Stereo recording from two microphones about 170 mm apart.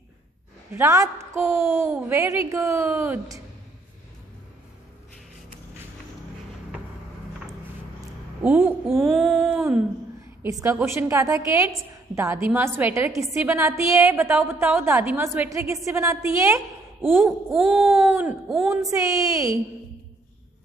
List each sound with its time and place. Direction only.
0.7 s a woman's voice: 15° right (ahead or behind)
8.4 s a woman's voice: 10° right (ahead or behind)
8.9 s a sound: centre (ahead or behind)
10.4 s a woman's voice: 15° right (ahead or behind)
17.6 s a sound: centre (ahead or behind)
18.7 s a woman's voice: 20° right (ahead or behind)